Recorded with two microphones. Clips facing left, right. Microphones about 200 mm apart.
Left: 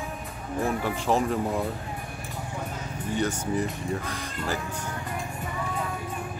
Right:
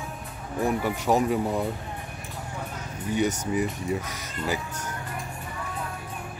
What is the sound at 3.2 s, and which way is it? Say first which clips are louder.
Speech: right 2 dB; 15° right (ahead or behind).